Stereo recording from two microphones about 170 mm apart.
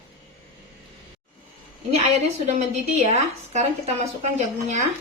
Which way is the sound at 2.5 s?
40° right (ahead or behind).